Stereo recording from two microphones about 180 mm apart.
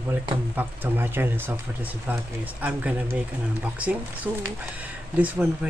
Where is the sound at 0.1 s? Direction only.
10° right (ahead or behind).